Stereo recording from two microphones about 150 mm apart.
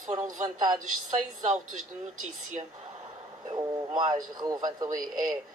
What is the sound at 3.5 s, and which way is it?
A man's voice, 25° right (ahead or behind).